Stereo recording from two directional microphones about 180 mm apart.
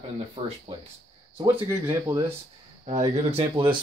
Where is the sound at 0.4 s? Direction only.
35° right (ahead or behind).